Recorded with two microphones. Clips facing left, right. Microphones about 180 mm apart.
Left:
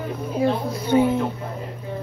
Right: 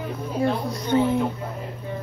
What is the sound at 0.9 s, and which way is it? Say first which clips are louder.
Speech: left 3 dB; 15° left (ahead or behind).